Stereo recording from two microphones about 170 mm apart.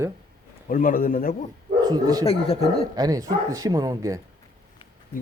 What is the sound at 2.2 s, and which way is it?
Speech, 35° left (ahead or behind).